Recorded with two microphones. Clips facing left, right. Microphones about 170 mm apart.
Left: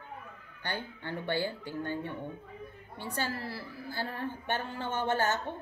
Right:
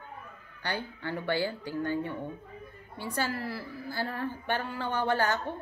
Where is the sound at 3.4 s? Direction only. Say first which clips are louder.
Right 3 dB; 45° right (ahead or behind).